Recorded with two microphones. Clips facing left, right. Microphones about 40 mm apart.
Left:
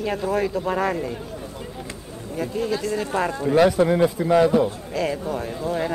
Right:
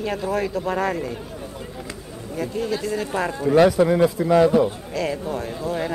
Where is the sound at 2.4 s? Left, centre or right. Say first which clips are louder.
Even; centre.